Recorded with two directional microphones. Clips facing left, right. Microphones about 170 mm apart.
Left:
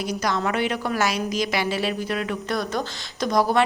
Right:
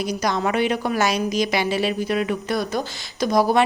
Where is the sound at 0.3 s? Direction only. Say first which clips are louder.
Right 3 dB; 15° right (ahead or behind).